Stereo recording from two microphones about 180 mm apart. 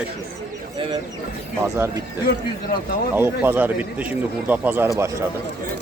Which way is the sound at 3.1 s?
10° right (ahead or behind).